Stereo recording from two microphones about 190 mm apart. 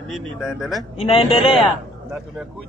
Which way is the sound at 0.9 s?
30° left (ahead or behind).